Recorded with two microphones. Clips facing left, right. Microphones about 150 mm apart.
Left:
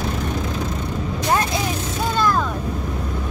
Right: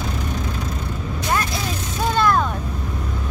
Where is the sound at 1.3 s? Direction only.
25° left (ahead or behind).